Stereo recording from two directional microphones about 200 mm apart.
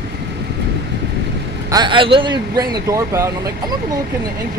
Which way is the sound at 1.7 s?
25° right (ahead or behind).